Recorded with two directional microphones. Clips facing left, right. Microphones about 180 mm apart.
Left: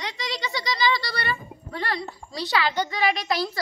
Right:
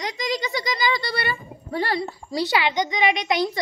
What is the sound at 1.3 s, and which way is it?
A woman's voice, 30° right (ahead or behind).